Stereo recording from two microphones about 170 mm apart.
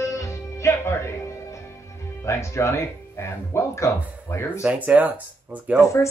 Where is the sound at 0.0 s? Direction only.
15° left (ahead or behind).